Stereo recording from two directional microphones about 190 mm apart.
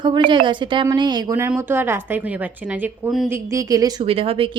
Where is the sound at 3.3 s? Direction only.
15° right (ahead or behind).